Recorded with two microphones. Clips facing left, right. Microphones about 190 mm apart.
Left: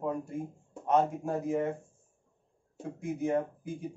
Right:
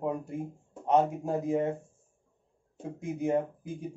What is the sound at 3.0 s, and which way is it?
Speech, 15° right (ahead or behind).